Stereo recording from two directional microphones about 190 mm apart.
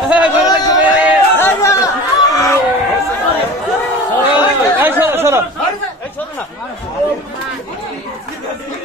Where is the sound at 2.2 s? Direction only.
20° left (ahead or behind).